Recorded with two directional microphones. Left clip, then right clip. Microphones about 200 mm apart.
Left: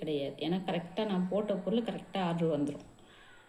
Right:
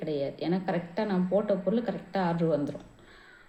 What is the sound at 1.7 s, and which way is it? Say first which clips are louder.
Speech: right 3 dB; 30° right (ahead or behind).